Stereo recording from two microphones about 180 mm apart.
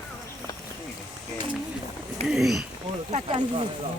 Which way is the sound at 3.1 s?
30° right (ahead or behind).